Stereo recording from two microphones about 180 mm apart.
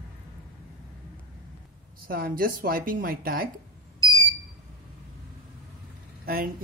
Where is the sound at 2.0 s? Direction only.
55° right (ahead or behind).